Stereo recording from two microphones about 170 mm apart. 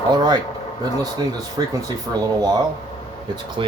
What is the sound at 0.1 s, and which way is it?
Speech, 25° right (ahead or behind).